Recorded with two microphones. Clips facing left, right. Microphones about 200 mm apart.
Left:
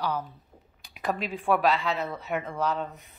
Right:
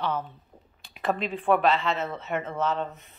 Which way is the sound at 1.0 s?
Centre (ahead or behind).